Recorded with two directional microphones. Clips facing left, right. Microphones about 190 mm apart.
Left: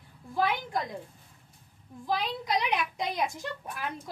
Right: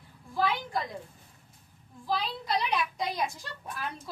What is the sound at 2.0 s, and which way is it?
A woman's voice, 20° left (ahead or behind).